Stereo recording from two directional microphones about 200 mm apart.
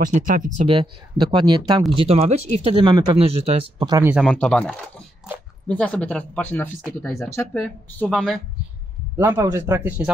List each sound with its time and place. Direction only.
0.0 s speech: 40° right (ahead or behind)
0.6 s speech: 25° right (ahead or behind)
4.0 s speech: 5° right (ahead or behind)
4.3 s speech: 5° left (ahead or behind)
9.1 s speech: 10° right (ahead or behind)